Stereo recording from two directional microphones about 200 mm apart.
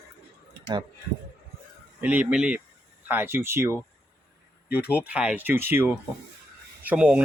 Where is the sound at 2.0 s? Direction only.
5° right (ahead or behind).